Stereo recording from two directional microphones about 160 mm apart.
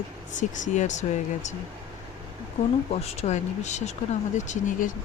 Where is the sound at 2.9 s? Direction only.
40° left (ahead or behind).